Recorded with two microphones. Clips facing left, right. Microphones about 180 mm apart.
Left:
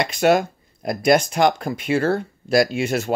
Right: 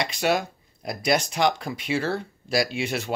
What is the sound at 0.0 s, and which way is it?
Speech, 50° left (ahead or behind).